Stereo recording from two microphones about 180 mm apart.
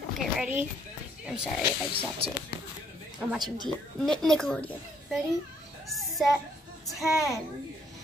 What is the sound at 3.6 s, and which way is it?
A woman's voice, 5° left (ahead or behind).